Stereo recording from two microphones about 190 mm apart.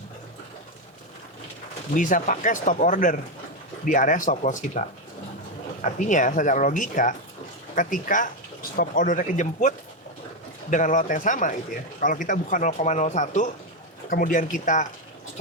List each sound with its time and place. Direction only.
2.0 s speech: 45° left (ahead or behind)